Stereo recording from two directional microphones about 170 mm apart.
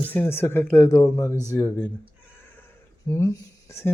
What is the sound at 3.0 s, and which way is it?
Speech, 15° left (ahead or behind).